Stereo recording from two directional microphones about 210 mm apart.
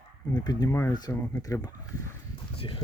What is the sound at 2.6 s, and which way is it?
Music, 25° left (ahead or behind).